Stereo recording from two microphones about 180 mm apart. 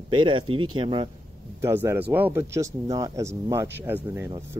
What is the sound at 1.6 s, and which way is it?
Speech, 15° right (ahead or behind).